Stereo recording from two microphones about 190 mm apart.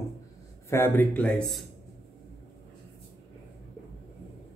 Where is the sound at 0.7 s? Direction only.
15° left (ahead or behind).